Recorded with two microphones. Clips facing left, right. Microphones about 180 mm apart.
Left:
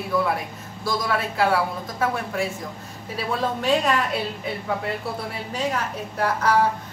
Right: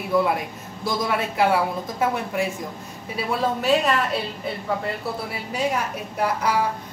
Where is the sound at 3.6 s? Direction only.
Centre (ahead or behind).